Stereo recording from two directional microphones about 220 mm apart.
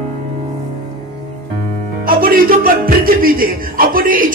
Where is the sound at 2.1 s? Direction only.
40° right (ahead or behind).